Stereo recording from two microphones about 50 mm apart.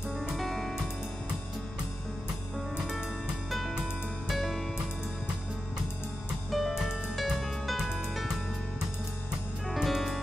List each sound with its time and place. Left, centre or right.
0.2 s music: centre
3.4 s music: centre
6.5 s music: centre
9.7 s music: centre